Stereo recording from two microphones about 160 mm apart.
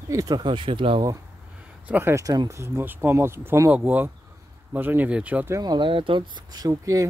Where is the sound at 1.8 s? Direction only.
10° right (ahead or behind).